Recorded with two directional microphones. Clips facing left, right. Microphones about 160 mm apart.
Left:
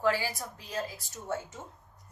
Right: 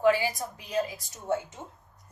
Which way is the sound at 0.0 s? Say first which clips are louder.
Right 5 dB; 15° right (ahead or behind).